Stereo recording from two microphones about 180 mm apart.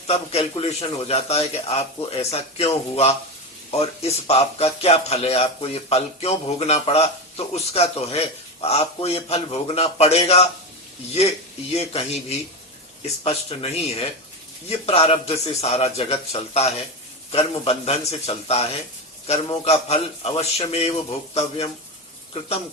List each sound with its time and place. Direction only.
0.1 s a man's voice: 35° left (ahead or behind)
13.2 s a man's voice: 35° left (ahead or behind)